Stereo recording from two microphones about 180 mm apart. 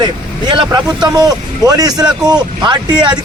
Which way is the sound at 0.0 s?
25° right (ahead or behind).